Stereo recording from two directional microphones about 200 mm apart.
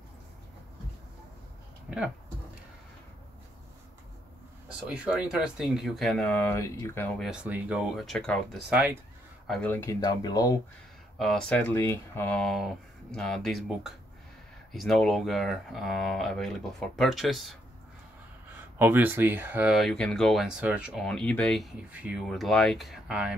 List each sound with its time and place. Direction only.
1.9 s speech: 5° right (ahead or behind)
4.8 s speech: 5° right (ahead or behind)
7.2 s speech: 5° right (ahead or behind)
9.5 s speech: 5° left (ahead or behind)
11.1 s speech: centre (ahead or behind)
18.8 s speech: 10° right (ahead or behind)